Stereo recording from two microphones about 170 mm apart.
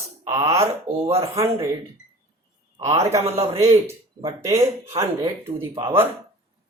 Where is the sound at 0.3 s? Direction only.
20° right (ahead or behind).